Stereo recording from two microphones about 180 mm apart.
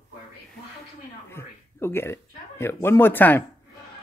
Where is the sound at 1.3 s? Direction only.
15° left (ahead or behind).